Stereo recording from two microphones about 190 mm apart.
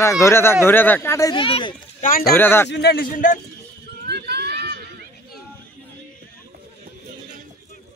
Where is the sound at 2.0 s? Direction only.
50° left (ahead or behind).